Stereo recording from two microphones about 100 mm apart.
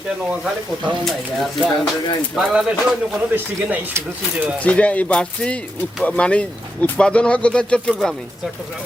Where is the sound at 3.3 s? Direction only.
15° right (ahead or behind).